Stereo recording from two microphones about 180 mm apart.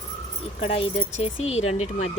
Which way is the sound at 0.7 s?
35° left (ahead or behind).